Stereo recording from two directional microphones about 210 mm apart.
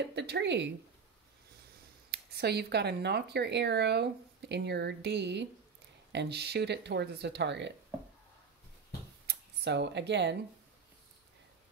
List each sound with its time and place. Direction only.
0.0 s speech: 55° right (ahead or behind)
2.0 s speech: 50° right (ahead or behind)
9.3 s speech: 55° right (ahead or behind)